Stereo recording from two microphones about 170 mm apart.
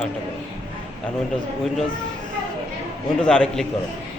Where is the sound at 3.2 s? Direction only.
5° left (ahead or behind).